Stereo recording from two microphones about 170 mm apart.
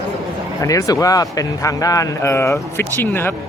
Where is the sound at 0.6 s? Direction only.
20° left (ahead or behind).